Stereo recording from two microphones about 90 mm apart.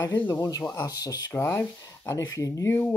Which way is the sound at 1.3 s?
20° left (ahead or behind).